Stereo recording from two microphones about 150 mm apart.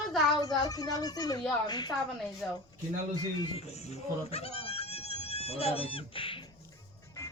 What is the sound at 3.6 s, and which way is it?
Speech, 45° left (ahead or behind).